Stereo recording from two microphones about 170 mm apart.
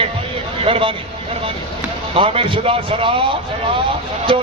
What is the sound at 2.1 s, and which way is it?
Speech, 35° right (ahead or behind).